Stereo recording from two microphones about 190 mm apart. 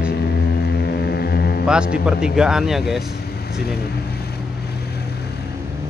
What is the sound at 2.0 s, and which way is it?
Speech, 5° right (ahead or behind).